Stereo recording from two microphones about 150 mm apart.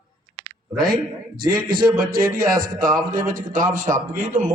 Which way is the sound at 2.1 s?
75° right (ahead or behind).